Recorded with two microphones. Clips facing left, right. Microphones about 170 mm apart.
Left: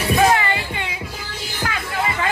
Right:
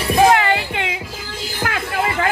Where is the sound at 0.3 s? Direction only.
75° right (ahead or behind).